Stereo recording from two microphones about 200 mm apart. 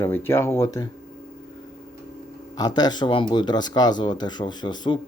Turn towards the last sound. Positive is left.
turn(degrees=20)  # may be behind; listen again after turning